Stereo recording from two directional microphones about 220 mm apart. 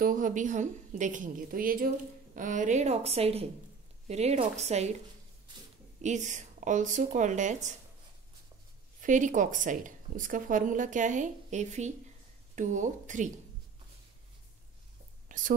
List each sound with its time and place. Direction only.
0.0 s a woman's voice: 35° right (ahead or behind)
5.9 s speech: 35° right (ahead or behind)
9.0 s speech: 35° right (ahead or behind)
15.2 s whispering: 35° right (ahead or behind)